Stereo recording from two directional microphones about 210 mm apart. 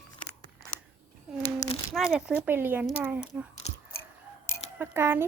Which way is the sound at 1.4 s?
15° left (ahead or behind).